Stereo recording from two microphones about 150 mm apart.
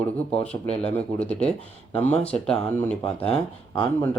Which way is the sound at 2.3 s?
10° left (ahead or behind).